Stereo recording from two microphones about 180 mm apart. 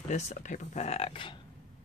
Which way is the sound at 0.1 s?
40° left (ahead or behind).